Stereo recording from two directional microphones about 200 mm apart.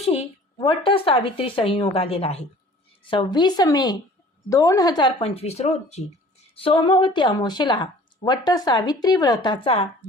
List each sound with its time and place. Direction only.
0.0 s a woman's voice: 30° left (ahead or behind)